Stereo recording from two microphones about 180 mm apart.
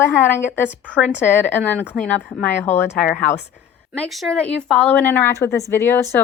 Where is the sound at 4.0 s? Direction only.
Centre (ahead or behind).